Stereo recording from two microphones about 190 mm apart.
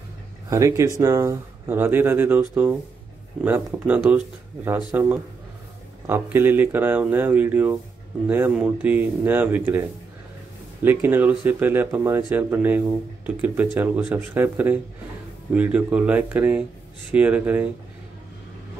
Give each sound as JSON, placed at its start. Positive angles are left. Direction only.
{"t": 0.5, "sound": "speech", "side_deg": -15}
{"t": 3.4, "sound": "speech", "side_deg": -10}